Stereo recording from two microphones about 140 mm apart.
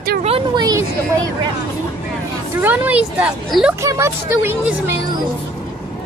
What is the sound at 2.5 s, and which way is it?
Speech, 10° right (ahead or behind).